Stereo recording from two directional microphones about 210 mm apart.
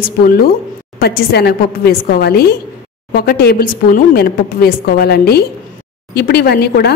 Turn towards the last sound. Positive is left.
turn(degrees=50)  # may be behind; listen again after turning